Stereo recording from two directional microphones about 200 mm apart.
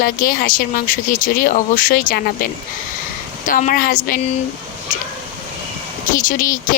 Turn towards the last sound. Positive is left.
turn(degrees=40)  # may be behind; listen again after turning